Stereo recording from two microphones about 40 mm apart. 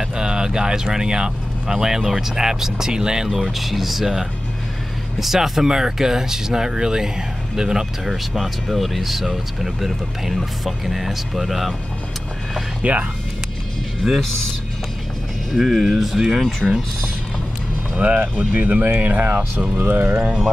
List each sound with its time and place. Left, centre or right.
0.1 s speech: centre
5.2 s speech: centre
8.3 s speech: centre
12.8 s speech: right
14.0 s speech: centre
15.5 s speech: centre
17.9 s speech: right